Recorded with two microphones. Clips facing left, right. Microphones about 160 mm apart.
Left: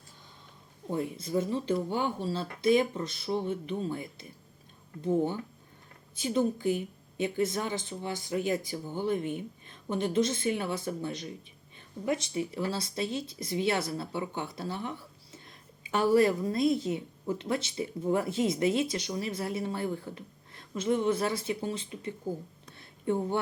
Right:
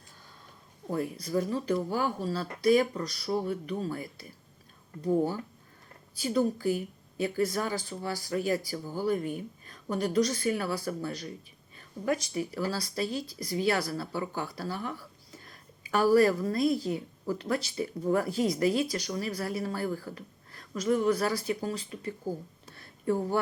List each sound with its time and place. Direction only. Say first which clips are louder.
0.9 s speech: even; 25° left (ahead or behind)
6.1 s speech: right 1 dB; 20° left (ahead or behind)
22.7 s a sound: right 1 dB; 20° left (ahead or behind)